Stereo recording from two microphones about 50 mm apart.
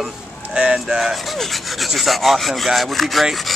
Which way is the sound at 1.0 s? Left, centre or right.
Centre.